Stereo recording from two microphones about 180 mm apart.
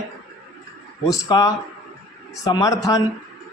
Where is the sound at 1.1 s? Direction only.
20° left (ahead or behind).